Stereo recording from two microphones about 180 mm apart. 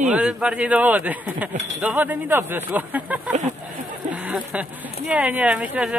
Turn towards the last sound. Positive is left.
turn(degrees=-10)  # may be behind; listen again after turning